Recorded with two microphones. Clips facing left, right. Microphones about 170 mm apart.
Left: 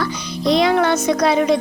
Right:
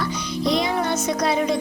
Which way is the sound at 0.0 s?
90° left.